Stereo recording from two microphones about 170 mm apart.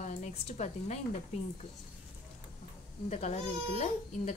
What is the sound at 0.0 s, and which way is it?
Speech, 45° left (ahead or behind).